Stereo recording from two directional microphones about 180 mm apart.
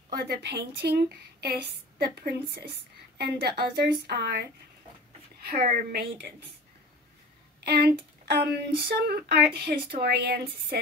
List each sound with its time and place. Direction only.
0.1 s a woman's voice: 65° right (ahead or behind)
5.9 s a woman's voice: 55° right (ahead or behind)
7.6 s a woman's voice: 60° right (ahead or behind)